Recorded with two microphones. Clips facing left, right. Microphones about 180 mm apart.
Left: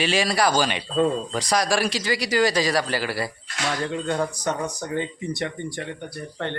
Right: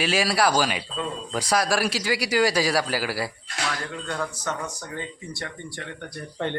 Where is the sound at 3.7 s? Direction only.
25° left (ahead or behind).